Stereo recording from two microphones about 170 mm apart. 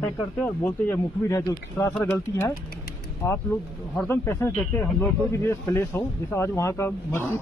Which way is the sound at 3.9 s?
15° left (ahead or behind).